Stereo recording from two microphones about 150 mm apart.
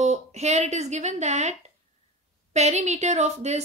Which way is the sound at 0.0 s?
45° right (ahead or behind).